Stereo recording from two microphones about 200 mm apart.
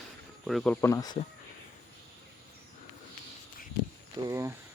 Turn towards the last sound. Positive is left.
turn(degrees=-15)  # may be behind; listen again after turning